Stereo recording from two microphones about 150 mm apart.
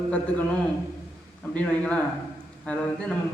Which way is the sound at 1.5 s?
5° left (ahead or behind).